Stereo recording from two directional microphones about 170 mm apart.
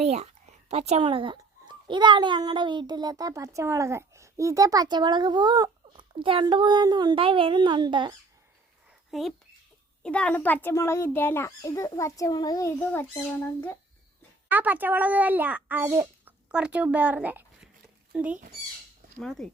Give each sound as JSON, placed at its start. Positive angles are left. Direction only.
{"t": 0.0, "sound": "a child's voice", "side_deg": -40}
{"t": 9.0, "sound": "a child's voice", "side_deg": 0}
{"t": 14.5, "sound": "a child's voice", "side_deg": -10}